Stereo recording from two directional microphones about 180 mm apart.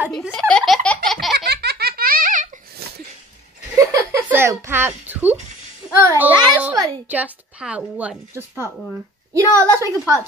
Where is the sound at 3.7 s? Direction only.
15° right (ahead or behind).